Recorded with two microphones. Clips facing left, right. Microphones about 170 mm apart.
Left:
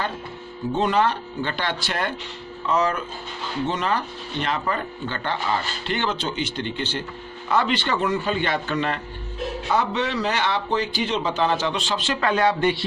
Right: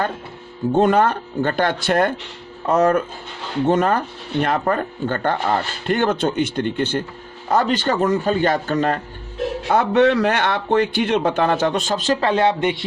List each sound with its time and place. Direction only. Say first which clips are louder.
0.7 s speech: right 5 dB; 50° right (ahead or behind)
9.6 s a man's voice: right 9 dB; 55° right (ahead or behind); by 12.8 s 20° right (ahead or behind)